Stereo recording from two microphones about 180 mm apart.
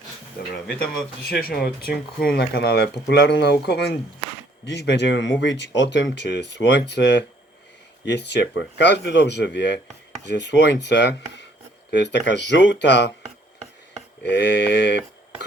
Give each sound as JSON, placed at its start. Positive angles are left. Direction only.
{"t": 0.5, "sound": "speech", "side_deg": 5}
{"t": 1.3, "sound": "speech", "side_deg": 60}
{"t": 14.3, "sound": "a sound", "side_deg": 70}